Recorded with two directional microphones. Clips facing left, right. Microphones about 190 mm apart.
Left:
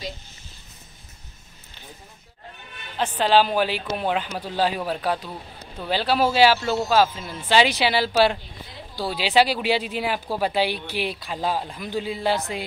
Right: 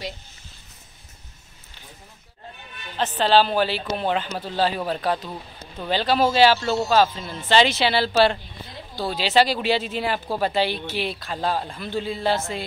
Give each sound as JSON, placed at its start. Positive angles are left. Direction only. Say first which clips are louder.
{"t": 3.0, "sound": "speech", "louder": "even", "side_deg": 10}